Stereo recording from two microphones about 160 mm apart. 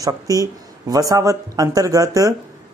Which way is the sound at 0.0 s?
20° right (ahead or behind).